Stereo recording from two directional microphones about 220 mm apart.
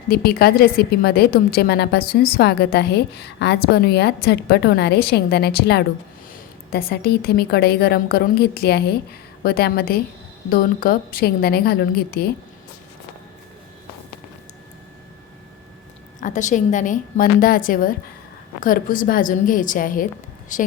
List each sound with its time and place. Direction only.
0.1 s a woman's voice: 45° left (ahead or behind)
16.2 s a woman's voice: 35° left (ahead or behind)